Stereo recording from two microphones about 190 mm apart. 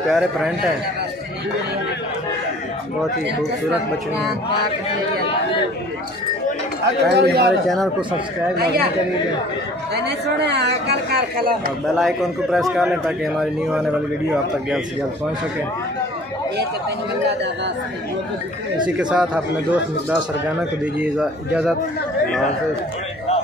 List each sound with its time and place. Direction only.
0.1 s a man's voice: centre (ahead or behind)
7.1 s speech: 55° right (ahead or behind)
7.6 s a man's voice: centre (ahead or behind)
8.5 s speech: 60° right (ahead or behind)
10.0 s speech: 60° right (ahead or behind)
12.0 s a man's voice: centre (ahead or behind)
18.9 s a man's voice: 5° right (ahead or behind)